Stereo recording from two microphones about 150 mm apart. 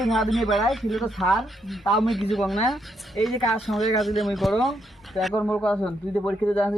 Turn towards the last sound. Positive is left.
turn(degrees=10)  # may be behind; listen again after turning